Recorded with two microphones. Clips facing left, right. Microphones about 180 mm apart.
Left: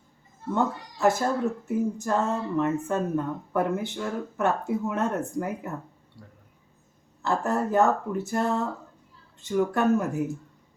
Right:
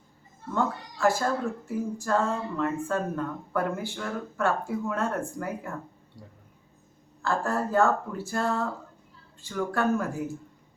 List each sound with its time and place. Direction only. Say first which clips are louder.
0.5 s speech: left 2 dB; 20° left (ahead or behind)
7.2 s speech: left 2 dB; 20° left (ahead or behind)